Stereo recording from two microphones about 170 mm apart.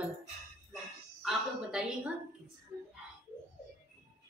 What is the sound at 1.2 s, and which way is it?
Speech, centre (ahead or behind).